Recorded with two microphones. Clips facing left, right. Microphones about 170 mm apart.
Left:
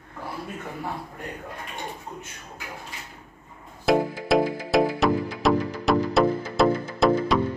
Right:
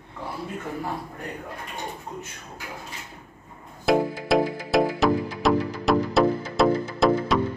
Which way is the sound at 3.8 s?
Centre (ahead or behind).